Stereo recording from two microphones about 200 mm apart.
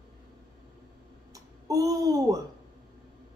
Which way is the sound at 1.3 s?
15° right (ahead or behind).